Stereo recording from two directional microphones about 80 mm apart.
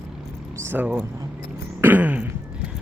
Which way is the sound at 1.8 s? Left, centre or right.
Right.